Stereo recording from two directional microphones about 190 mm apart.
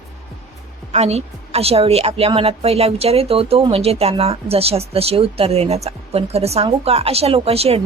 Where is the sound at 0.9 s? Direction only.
35° right (ahead or behind).